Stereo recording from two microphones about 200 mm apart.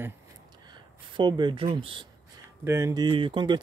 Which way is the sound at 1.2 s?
25° right (ahead or behind).